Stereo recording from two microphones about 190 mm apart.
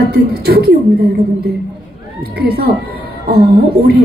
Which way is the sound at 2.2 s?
55° right (ahead or behind).